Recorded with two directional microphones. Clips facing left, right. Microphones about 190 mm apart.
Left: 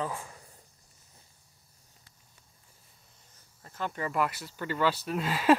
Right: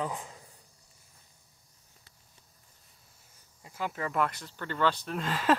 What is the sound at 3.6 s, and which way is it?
Speech, 10° right (ahead or behind).